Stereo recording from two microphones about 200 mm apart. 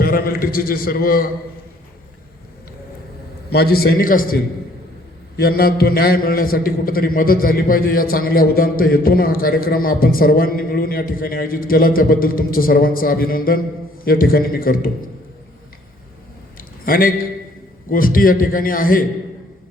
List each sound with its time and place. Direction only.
0.0 s a man's voice: 45° left (ahead or behind)
3.5 s a man's voice: 50° left (ahead or behind)
5.4 s a man's voice: 50° left (ahead or behind)
16.6 s a sound: 45° left (ahead or behind)
17.8 s a man's voice: 45° left (ahead or behind)